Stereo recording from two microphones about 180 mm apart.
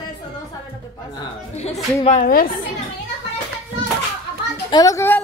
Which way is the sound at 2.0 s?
40° left (ahead or behind).